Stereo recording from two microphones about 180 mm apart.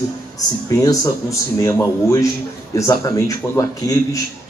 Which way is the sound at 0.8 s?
20° left (ahead or behind).